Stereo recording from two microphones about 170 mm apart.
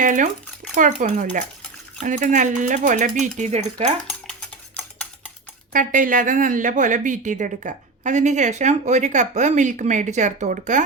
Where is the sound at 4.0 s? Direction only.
5° left (ahead or behind).